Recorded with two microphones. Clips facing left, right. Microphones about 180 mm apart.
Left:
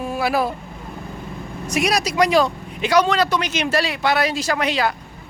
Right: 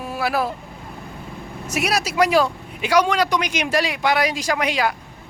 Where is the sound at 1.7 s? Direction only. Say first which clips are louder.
Left 2 dB; 5° right (ahead or behind).